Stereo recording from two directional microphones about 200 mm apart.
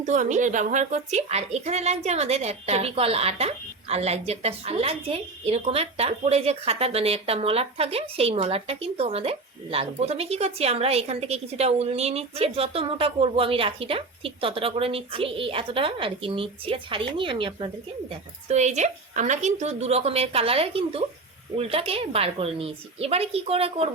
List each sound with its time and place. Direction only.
0.0 s a woman's voice: 40° right (ahead or behind)